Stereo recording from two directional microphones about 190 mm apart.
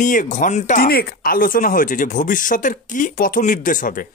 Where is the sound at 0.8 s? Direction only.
50° left (ahead or behind).